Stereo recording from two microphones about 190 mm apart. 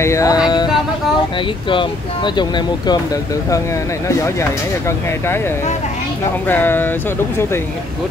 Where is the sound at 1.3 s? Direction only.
25° left (ahead or behind).